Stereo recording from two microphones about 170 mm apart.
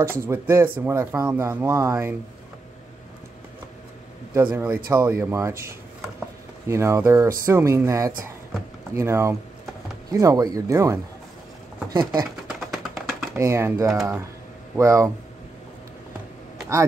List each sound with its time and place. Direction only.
0.0 s speech: 15° right (ahead or behind)
4.3 s speech: 15° right (ahead or behind)
6.7 s speech: 15° right (ahead or behind)
12.4 s a sound: centre (ahead or behind)
13.4 s speech: 15° right (ahead or behind)